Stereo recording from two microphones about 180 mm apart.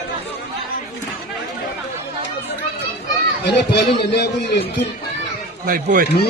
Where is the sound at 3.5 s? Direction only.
70° left (ahead or behind).